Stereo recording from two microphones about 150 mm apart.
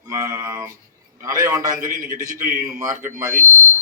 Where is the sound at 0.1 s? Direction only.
20° right (ahead or behind).